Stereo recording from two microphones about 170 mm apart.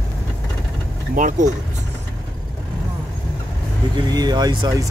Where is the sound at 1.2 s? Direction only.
50° right (ahead or behind).